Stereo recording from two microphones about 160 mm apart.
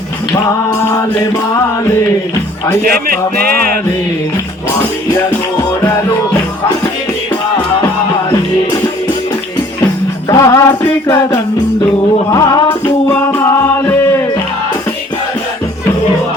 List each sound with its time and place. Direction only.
3.4 s music: 70° right (ahead or behind)
10.2 s music: 20° left (ahead or behind)
13.1 s music: 10° left (ahead or behind)